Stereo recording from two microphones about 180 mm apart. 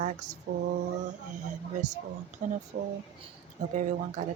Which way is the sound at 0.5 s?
50° right (ahead or behind).